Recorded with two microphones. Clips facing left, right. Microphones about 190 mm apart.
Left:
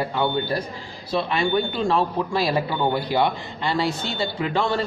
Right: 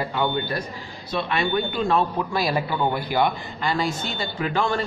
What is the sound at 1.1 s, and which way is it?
Speech, 30° left (ahead or behind).